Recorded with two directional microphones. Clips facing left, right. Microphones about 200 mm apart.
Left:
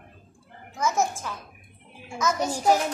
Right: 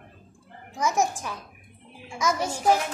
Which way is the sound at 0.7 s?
15° right (ahead or behind).